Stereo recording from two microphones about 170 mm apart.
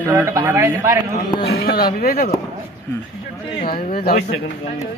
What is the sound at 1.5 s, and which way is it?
Speech, 65° left (ahead or behind).